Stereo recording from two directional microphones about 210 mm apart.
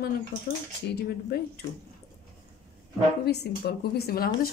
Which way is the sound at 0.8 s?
50° left (ahead or behind).